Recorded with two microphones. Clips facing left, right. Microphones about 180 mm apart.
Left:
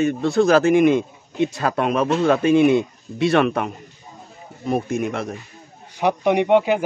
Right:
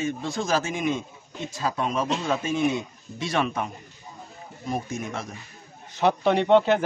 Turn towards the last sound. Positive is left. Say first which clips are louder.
# left 2 dB
turn(degrees=10)  # may be behind; listen again after turning